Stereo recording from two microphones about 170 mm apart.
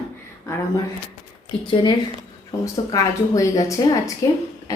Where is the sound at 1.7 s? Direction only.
25° left (ahead or behind).